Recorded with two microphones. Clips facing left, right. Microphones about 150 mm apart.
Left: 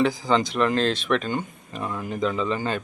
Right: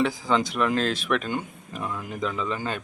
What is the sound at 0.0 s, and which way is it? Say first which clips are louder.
Speech: left 2 dB; centre (ahead or behind).